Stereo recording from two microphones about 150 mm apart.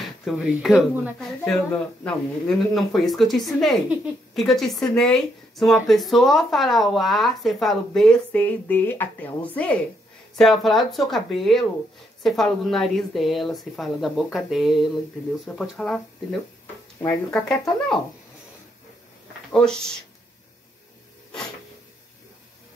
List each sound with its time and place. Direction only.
0.0 s a woman's voice: centre (ahead or behind)
19.5 s speech: 5° left (ahead or behind)